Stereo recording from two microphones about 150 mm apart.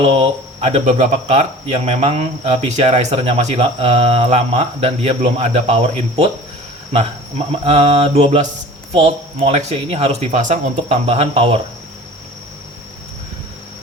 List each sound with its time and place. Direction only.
0.0 s cricket: 40° right (ahead or behind)
6.9 s speech: 40° right (ahead or behind)
8.9 s cricket: 40° right (ahead or behind)